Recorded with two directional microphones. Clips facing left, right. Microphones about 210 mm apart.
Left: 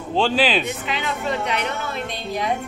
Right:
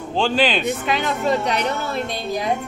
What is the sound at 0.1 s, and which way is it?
Speech, 5° left (ahead or behind).